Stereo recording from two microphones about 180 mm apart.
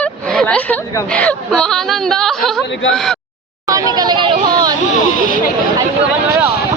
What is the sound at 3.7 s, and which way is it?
A woman's voice, 20° right (ahead or behind).